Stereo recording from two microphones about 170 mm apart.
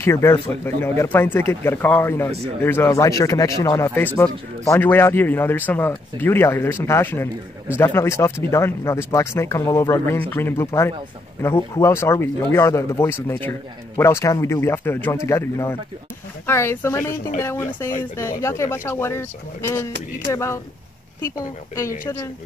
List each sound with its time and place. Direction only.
0.0 s speech: 15° left (ahead or behind)
20.2 s speech: 15° left (ahead or behind)